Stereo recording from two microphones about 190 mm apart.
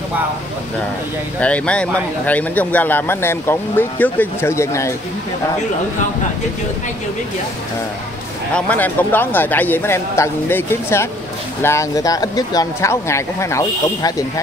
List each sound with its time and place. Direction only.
1.4 s speech: 5° left (ahead or behind)
8.5 s speech: 10° left (ahead or behind)